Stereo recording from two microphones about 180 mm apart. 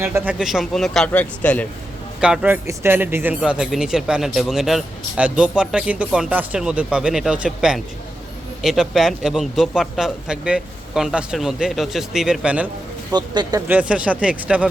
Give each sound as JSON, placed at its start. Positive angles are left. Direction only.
{"t": 0.0, "sound": "speech", "side_deg": -10}
{"t": 2.2, "sound": "speech", "side_deg": -5}
{"t": 13.1, "sound": "speech", "side_deg": -25}
{"t": 13.7, "sound": "speech", "side_deg": -5}